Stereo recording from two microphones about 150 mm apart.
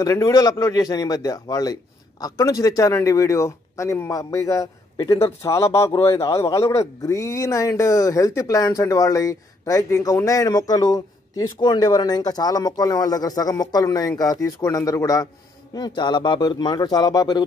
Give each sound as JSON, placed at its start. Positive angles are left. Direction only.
{"t": 0.0, "sound": "speech", "side_deg": 20}